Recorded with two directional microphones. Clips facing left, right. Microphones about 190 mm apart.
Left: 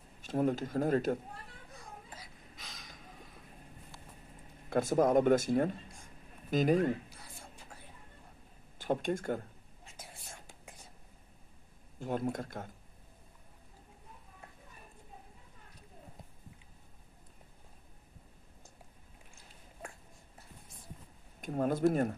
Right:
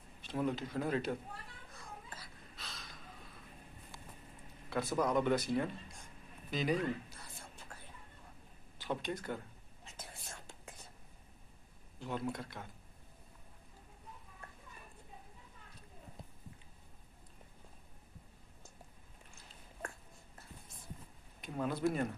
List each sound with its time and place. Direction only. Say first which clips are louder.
0.2 s a man's voice: left 5 dB; 45° left (ahead or behind)
2.1 s a sound: left 1 dB; 15° left (ahead or behind)
4.6 s a man's voice: left 6 dB; 45° left (ahead or behind)
8.7 s speech: left 6 dB; 50° left (ahead or behind)
9.9 s whispering: even; 10° left (ahead or behind)
12.0 s a man's voice: left 5 dB; 45° left (ahead or behind)
21.4 s a man's voice: left 6 dB; 45° left (ahead or behind)